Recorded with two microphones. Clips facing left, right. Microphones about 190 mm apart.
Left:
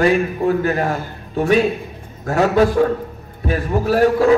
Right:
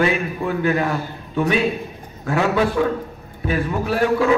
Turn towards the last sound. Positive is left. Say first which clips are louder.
# left 4 dB
turn(degrees=40)  # may be behind; listen again after turning